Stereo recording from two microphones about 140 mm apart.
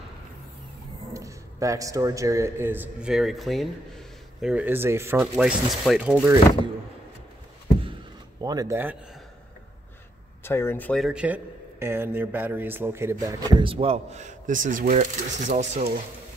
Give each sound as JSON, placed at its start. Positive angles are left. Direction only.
{"t": 1.1, "sound": "a man's voice", "side_deg": -25}
{"t": 5.2, "sound": "speech", "side_deg": -5}
{"t": 8.4, "sound": "speech", "side_deg": -25}
{"t": 10.4, "sound": "speech", "side_deg": 15}
{"t": 11.0, "sound": "a man's voice", "side_deg": -5}